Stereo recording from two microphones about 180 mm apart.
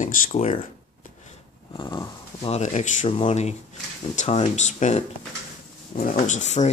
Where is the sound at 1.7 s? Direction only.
25° left (ahead or behind).